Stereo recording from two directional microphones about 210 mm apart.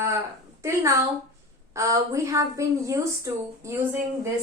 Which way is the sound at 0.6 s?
15° right (ahead or behind).